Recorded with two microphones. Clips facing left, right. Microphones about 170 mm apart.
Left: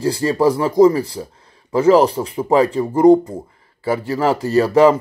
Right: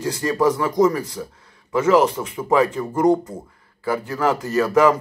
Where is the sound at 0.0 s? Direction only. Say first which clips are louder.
Left 4 dB; 30° left (ahead or behind).